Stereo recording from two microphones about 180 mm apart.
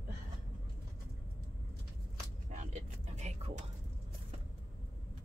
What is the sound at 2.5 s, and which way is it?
Vehicle, 40° right (ahead or behind).